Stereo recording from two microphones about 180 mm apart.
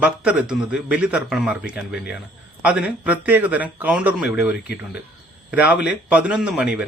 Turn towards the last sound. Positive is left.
turn(degrees=-5)  # may be behind; listen again after turning